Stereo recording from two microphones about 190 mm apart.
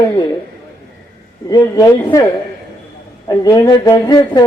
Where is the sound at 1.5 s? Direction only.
20° left (ahead or behind).